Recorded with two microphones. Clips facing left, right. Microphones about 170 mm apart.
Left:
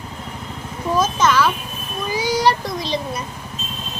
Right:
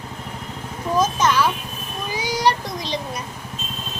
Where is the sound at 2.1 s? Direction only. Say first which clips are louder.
Left 3 dB; 15° right (ahead or behind).